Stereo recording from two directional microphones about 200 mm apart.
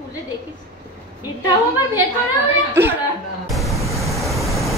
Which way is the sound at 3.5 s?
Centre (ahead or behind).